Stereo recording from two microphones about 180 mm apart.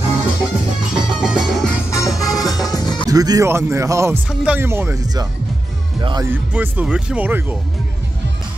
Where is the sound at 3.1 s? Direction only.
20° right (ahead or behind).